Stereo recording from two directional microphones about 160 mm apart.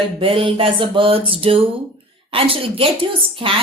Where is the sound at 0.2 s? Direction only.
35° right (ahead or behind).